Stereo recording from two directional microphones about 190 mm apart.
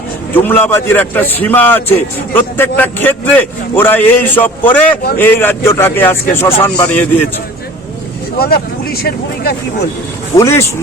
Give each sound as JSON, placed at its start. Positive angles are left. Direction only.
{"t": 0.3, "sound": "a man's voice", "side_deg": 10}
{"t": 8.4, "sound": "speech", "side_deg": 55}
{"t": 10.3, "sound": "a man's voice", "side_deg": 15}